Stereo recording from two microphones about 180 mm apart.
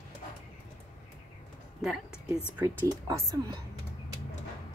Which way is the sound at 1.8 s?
Centre (ahead or behind).